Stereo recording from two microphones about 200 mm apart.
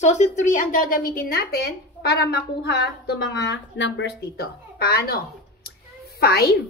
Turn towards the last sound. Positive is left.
turn(degrees=50)  # may be behind; listen again after turning